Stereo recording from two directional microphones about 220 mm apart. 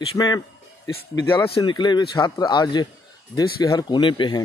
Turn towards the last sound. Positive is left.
turn(degrees=20)  # may be behind; listen again after turning